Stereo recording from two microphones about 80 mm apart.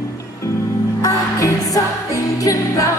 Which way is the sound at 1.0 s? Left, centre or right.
Left.